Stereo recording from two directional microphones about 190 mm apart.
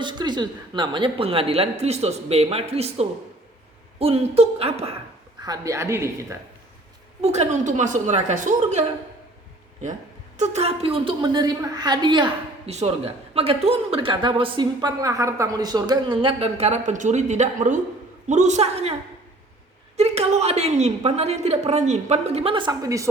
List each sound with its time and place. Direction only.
0.0 s a woman's voice: 25° right (ahead or behind)
5.4 s a woman's voice: 20° right (ahead or behind)
7.2 s a woman's voice: 35° right (ahead or behind)
10.3 s a woman's voice: 35° right (ahead or behind)
20.0 s a woman's voice: 35° right (ahead or behind); by 23.0 s 20° right (ahead or behind)